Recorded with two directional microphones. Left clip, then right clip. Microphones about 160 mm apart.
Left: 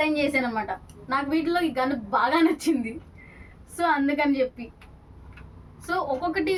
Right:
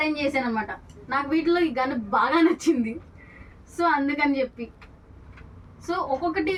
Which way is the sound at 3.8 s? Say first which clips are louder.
Right 1 dB; 20° left (ahead or behind).